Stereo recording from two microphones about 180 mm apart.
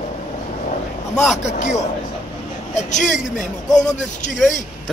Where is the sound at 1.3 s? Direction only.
40° left (ahead or behind).